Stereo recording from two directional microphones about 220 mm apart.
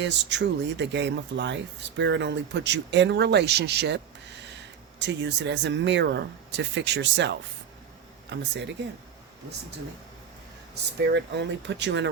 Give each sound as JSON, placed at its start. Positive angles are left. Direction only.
{"t": 0.0, "sound": "speech", "side_deg": -50}
{"t": 11.1, "sound": "speech", "side_deg": -50}